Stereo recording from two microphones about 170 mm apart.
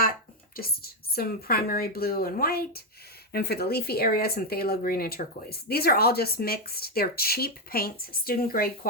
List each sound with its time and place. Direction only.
0.5 s speech: 60° left (ahead or behind)